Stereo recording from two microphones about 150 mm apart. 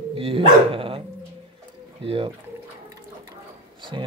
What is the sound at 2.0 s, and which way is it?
Speech, 40° right (ahead or behind).